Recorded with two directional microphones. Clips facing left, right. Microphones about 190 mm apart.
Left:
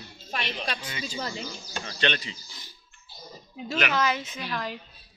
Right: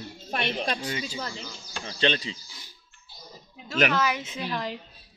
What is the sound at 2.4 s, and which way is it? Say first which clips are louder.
Speech: left 1 dB; 10° right (ahead or behind).